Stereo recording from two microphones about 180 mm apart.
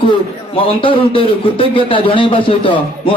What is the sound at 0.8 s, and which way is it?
Speech, 30° left (ahead or behind).